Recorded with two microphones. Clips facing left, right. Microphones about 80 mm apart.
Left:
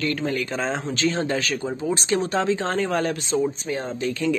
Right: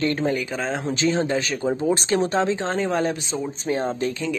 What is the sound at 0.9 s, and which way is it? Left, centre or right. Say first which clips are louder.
Speech: right 4 dB; centre.